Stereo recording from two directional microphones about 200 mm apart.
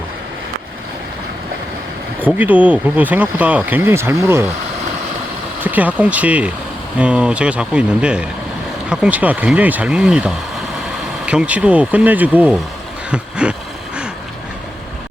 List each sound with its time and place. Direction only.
2.2 s speech: 10° right (ahead or behind)
5.6 s speech: 10° right (ahead or behind)
13.1 s a sound: 5° right (ahead or behind)